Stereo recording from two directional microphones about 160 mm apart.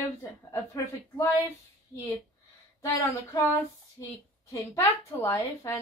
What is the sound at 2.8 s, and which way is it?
A woman's voice, 20° left (ahead or behind).